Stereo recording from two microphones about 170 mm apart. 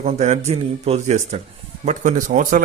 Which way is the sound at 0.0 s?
40° right (ahead or behind).